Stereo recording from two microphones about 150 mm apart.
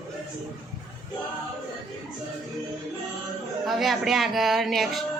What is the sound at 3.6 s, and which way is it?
A woman's voice, centre (ahead or behind).